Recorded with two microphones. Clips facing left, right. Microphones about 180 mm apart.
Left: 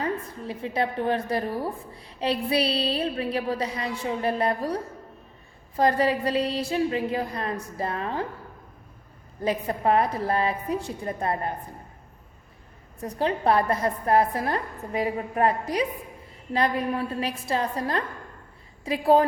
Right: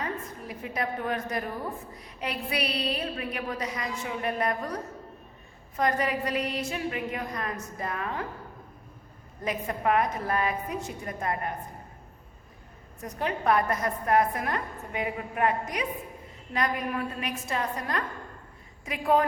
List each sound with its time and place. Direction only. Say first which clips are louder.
0.0 s a woman's voice: left 5 dB; 30° left (ahead or behind)
9.4 s a woman's voice: left 4 dB; 30° left (ahead or behind)
13.0 s a woman's voice: left 5 dB; 30° left (ahead or behind)